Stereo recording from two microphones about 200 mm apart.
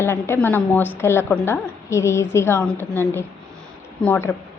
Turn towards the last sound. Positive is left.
turn(degrees=10)  # may be behind; listen again after turning